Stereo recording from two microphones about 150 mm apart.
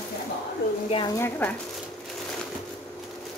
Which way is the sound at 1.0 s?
20° left (ahead or behind).